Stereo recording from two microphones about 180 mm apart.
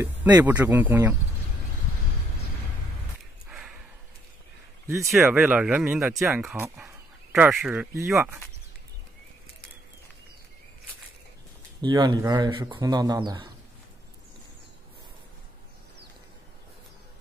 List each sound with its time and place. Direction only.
0.0 s speech: 10° right (ahead or behind)
3.4 s a sound: 5° right (ahead or behind)
4.9 s speech: centre (ahead or behind)
11.8 s speech: 25° right (ahead or behind)